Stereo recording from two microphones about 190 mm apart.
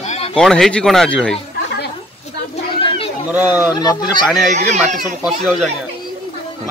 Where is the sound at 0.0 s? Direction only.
35° left (ahead or behind).